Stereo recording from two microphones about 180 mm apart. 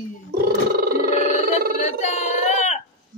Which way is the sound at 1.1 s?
40° left (ahead or behind).